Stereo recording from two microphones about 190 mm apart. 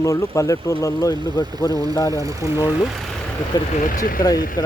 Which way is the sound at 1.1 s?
20° right (ahead or behind).